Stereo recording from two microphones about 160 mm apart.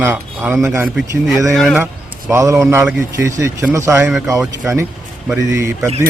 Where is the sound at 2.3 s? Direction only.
20° right (ahead or behind).